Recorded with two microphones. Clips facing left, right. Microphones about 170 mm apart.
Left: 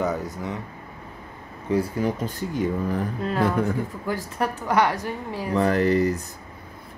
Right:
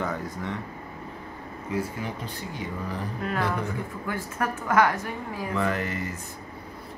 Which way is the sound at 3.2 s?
30° left (ahead or behind).